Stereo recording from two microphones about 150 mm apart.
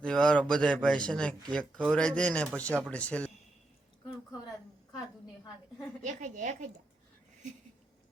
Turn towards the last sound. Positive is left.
turn(degrees=-55)  # may be behind; listen again after turning